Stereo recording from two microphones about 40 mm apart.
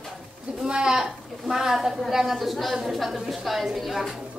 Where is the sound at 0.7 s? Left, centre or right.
Centre.